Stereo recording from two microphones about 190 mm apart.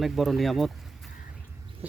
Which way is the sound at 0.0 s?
Centre (ahead or behind).